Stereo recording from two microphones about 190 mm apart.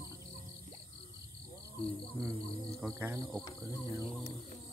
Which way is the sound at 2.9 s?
15° right (ahead or behind).